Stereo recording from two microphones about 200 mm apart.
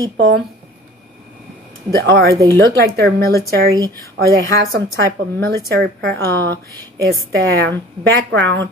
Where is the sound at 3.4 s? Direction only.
50° right (ahead or behind).